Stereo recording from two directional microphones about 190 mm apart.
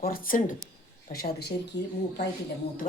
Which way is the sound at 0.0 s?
50° left (ahead or behind).